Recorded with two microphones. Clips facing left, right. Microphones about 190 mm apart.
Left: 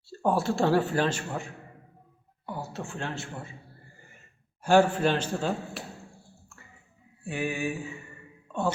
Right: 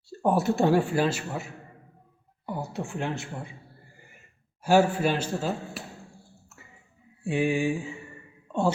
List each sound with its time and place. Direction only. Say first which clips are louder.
0.2 s speech: right 2 dB; 20° right (ahead or behind)
2.5 s speech: right 3 dB; 15° right (ahead or behind)
4.6 s speech: even; 10° right (ahead or behind)
7.3 s mantra: right 6 dB; 25° right (ahead or behind)